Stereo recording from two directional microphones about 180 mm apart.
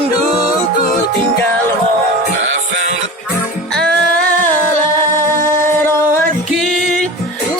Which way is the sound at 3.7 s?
5° left (ahead or behind).